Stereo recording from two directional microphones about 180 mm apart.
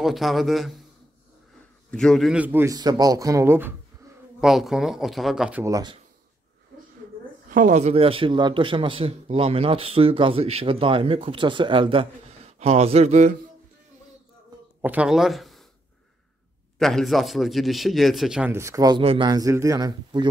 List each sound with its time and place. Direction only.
0.0 s a man's voice: centre (ahead or behind)
1.9 s a man's voice: 5° left (ahead or behind); by 3.7 s 10° right (ahead or behind)
4.4 s a man's voice: centre (ahead or behind)
5.6 s speech: 20° right (ahead or behind)
7.4 s a man's voice: 45° right (ahead or behind)
14.8 s speech: 10° right (ahead or behind)
16.7 s a man's voice: centre (ahead or behind); by 20.2 s 20° right (ahead or behind)